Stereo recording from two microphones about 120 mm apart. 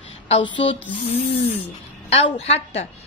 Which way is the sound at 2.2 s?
60° left (ahead or behind).